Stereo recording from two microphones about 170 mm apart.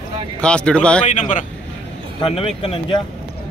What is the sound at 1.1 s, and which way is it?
Speech, 45° left (ahead or behind).